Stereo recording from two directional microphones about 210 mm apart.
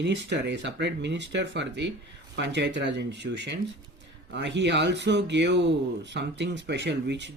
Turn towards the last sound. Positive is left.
turn(degrees=-55)  # may be behind; listen again after turning